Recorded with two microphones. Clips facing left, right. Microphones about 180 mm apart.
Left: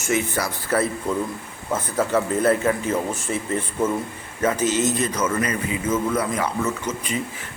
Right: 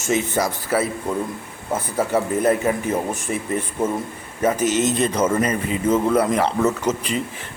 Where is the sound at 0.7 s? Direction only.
10° right (ahead or behind); by 5.4 s 30° right (ahead or behind).